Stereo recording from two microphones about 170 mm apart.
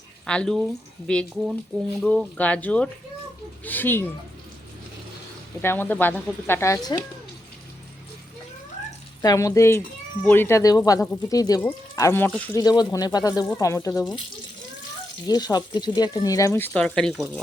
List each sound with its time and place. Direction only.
0.3 s speech: 5° left (ahead or behind)
5.6 s speech: 10° left (ahead or behind)
9.2 s speech: 20° left (ahead or behind)
15.3 s speech: 25° left (ahead or behind); by 17.4 s 5° left (ahead or behind)